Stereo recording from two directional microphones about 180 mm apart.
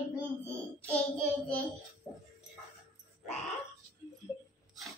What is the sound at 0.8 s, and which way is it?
Child singing, 5° left (ahead or behind).